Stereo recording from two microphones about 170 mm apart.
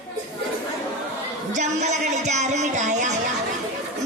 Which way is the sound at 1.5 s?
45° right (ahead or behind).